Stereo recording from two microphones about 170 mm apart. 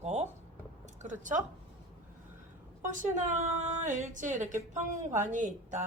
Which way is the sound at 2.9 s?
50° right (ahead or behind).